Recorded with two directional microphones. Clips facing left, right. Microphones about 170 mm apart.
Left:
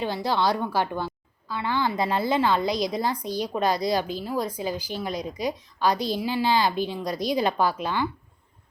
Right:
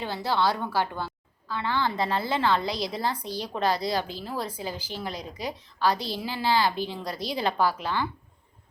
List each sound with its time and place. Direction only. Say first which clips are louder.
0.0 s speech: left 2 dB; 15° left (ahead or behind)